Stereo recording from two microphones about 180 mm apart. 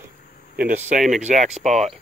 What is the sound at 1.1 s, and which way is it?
Speech, 40° right (ahead or behind).